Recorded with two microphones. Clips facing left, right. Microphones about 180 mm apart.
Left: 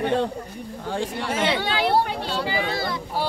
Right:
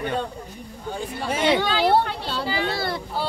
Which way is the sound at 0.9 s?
85° left.